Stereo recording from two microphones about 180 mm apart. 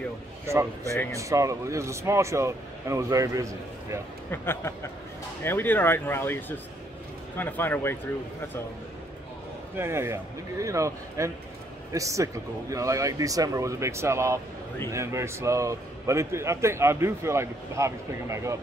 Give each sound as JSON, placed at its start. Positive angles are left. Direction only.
{"t": 0.5, "sound": "a man's voice", "side_deg": -15}
{"t": 4.3, "sound": "speech", "side_deg": 15}
{"t": 9.8, "sound": "a man's voice", "side_deg": -15}